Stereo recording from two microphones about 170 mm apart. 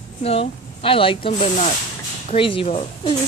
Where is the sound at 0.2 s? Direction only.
35° left (ahead or behind).